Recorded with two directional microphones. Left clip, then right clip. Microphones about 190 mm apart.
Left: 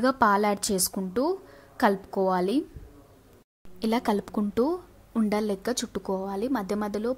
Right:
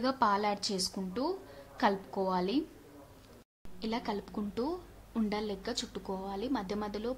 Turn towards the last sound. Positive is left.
turn(degrees=30)  # may be behind; listen again after turning